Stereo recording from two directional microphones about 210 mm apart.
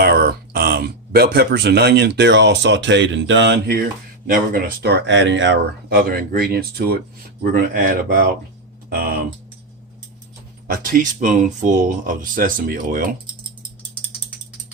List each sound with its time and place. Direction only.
0.0 s speech: 45° right (ahead or behind)
6.0 s speech: 45° right (ahead or behind)
10.7 s speech: 40° right (ahead or behind)